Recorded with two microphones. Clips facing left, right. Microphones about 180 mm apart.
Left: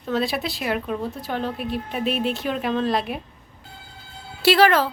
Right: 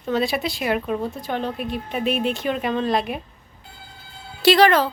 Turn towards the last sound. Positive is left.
turn(degrees=5)  # may be behind; listen again after turning